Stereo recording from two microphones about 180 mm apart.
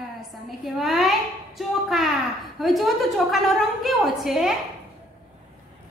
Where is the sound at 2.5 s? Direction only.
Centre (ahead or behind).